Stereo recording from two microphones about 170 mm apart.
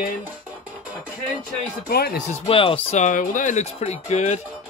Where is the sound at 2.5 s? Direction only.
30° left (ahead or behind).